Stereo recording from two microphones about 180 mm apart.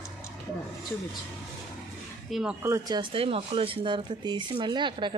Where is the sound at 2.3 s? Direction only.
5° right (ahead or behind).